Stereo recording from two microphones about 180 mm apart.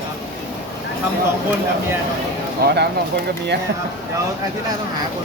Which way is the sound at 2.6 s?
60° right (ahead or behind).